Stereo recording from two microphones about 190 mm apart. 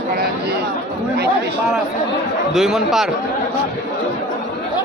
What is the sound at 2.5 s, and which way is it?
Speech, centre (ahead or behind).